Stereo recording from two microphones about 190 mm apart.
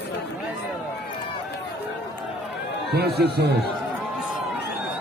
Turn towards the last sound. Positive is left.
turn(degrees=-55)  # may be behind; listen again after turning